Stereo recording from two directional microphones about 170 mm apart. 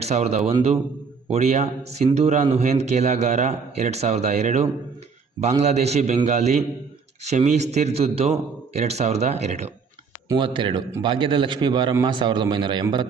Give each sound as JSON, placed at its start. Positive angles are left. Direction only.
{"t": 0.0, "sound": "a man's voice", "side_deg": -40}
{"t": 10.2, "sound": "a man's voice", "side_deg": -25}